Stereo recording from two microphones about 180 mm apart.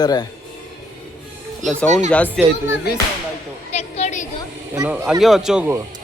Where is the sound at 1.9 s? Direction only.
40° right (ahead or behind).